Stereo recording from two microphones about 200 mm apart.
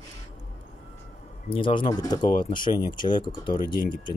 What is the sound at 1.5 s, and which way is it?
Speech, 25° left (ahead or behind).